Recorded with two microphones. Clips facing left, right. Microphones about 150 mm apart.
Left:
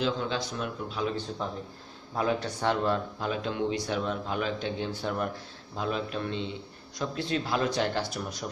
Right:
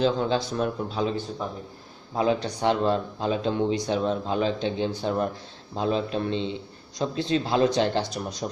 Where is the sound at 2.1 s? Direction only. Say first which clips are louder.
Right 4 dB; 20° right (ahead or behind).